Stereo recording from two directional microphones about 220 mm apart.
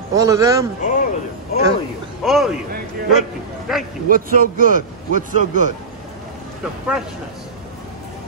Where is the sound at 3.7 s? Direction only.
Centre (ahead or behind).